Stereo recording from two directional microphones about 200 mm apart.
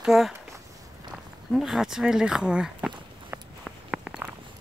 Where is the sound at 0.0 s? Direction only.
Centre (ahead or behind).